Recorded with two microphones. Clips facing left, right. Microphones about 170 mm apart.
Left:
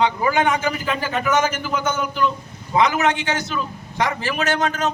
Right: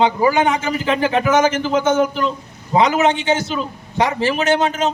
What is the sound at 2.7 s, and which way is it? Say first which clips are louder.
A man's voice: right 3 dB; 30° right (ahead or behind).